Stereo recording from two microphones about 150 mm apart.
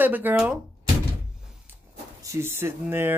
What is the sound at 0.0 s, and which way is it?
Speech, 10° right (ahead or behind).